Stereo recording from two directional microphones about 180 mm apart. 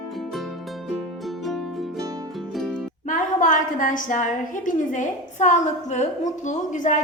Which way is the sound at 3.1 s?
45° left (ahead or behind).